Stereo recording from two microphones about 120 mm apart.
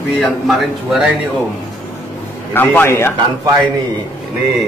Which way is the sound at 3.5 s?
30° right (ahead or behind).